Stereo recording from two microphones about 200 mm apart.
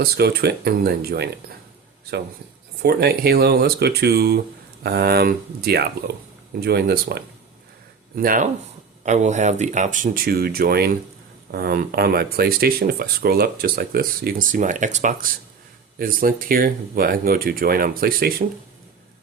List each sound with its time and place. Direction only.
0.0 s speech: 50° right (ahead or behind)
2.8 s speech: 50° right (ahead or behind)